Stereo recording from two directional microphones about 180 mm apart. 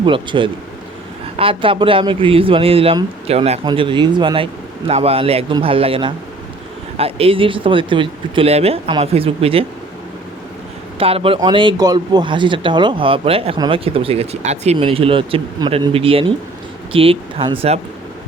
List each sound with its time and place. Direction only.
0.0 s a man's voice: 25° right (ahead or behind)
11.0 s speech: 30° right (ahead or behind)